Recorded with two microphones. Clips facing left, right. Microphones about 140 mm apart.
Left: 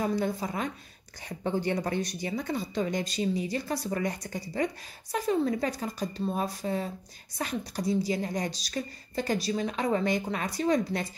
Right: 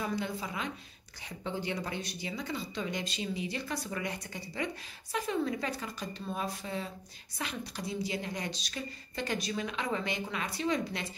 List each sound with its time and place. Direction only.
0.0 s a woman's voice: 45° left (ahead or behind)